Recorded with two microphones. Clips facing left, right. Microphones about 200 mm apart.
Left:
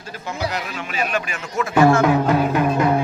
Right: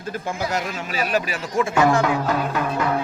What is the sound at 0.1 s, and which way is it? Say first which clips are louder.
A man's voice: right 1 dB; 50° right (ahead or behind).